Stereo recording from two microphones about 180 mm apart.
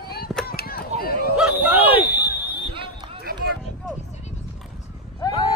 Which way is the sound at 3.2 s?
55° right (ahead or behind).